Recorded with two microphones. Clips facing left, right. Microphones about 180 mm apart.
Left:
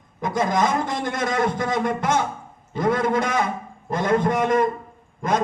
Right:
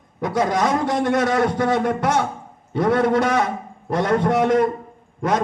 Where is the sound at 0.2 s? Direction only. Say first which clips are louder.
Right 2 dB; 70° right (ahead or behind).